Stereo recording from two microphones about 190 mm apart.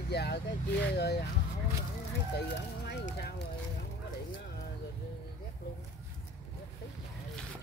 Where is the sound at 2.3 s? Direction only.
55° left (ahead or behind).